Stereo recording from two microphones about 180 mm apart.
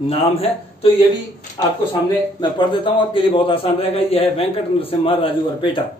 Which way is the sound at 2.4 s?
25° left (ahead or behind).